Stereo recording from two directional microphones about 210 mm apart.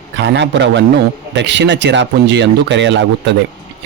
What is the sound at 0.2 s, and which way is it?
Speech, 55° right (ahead or behind).